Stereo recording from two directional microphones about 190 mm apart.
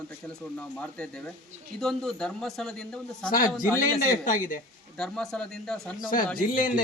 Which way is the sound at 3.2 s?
45° left (ahead or behind).